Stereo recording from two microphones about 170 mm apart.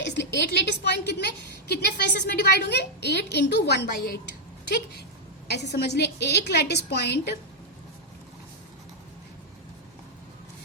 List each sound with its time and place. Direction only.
0.0 s a woman's voice: 90° left; by 4.2 s 70° left (ahead or behind)
5.5 s a woman's voice: 80° left